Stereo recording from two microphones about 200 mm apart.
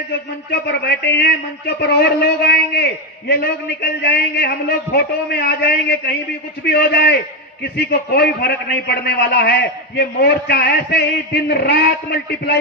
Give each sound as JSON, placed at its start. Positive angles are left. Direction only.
{"t": 0.7, "sound": "a man's voice", "side_deg": 55}